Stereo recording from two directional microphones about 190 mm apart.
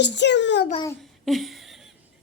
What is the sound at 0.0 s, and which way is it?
Speech, 65° left (ahead or behind).